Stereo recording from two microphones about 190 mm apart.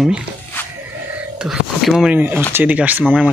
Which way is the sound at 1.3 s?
5° right (ahead or behind).